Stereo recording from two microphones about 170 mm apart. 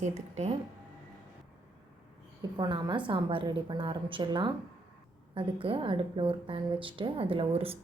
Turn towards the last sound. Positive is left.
turn(degrees=-35)  # may be behind; listen again after turning